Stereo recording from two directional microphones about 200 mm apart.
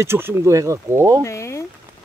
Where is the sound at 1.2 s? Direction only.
15° left (ahead or behind).